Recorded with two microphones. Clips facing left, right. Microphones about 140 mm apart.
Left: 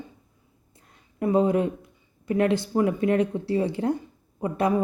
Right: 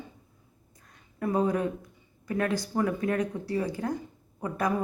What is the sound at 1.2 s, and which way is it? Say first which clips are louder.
A woman's voice: left 5 dB; 25° left (ahead or behind).